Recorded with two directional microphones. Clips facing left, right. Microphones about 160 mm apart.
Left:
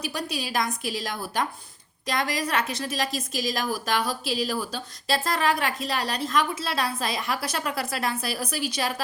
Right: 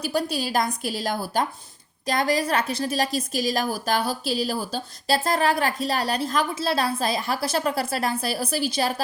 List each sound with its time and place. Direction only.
0.0 s a woman's voice: 30° right (ahead or behind)